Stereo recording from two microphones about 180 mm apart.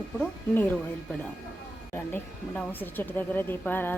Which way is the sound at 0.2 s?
10° left (ahead or behind).